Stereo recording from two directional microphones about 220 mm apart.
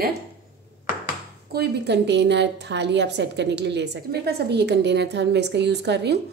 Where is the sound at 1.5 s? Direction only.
50° right (ahead or behind).